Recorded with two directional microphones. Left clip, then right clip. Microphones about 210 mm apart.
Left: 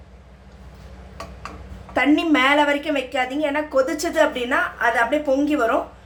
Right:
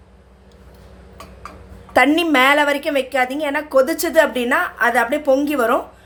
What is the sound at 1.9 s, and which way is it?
A woman's voice, 45° right (ahead or behind).